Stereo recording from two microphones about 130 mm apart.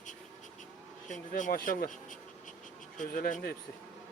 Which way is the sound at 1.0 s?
75° left (ahead or behind).